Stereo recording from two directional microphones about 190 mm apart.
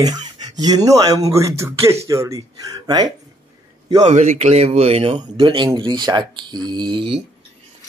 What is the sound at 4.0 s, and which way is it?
Speech, 40° right (ahead or behind).